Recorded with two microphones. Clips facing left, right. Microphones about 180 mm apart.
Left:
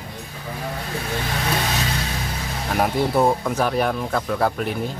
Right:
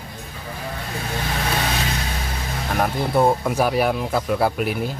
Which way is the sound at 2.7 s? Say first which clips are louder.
Left 1 dB; centre (ahead or behind).